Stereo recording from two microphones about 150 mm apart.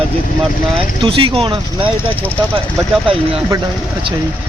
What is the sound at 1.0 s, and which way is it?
Speech, 35° right (ahead or behind).